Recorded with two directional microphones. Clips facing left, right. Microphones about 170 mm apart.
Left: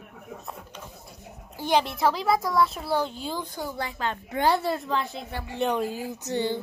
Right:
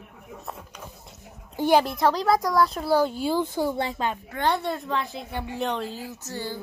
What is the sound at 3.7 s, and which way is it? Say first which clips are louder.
Speech: right 5 dB; 25° right (ahead or behind).